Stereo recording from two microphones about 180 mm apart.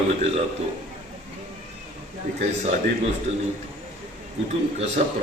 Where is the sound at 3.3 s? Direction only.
35° right (ahead or behind).